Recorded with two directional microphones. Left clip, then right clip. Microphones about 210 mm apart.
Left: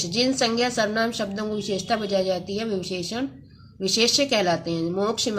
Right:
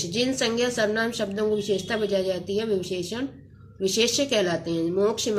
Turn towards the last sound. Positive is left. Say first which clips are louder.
# right 1 dB
turn(degrees=20)  # may be behind; listen again after turning